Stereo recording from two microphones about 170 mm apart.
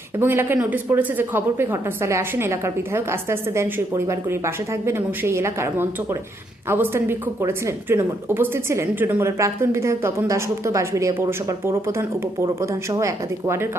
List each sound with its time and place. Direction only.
0.2 s speech: 15° right (ahead or behind)